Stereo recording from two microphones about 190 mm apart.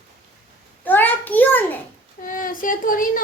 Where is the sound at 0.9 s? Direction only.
10° left (ahead or behind).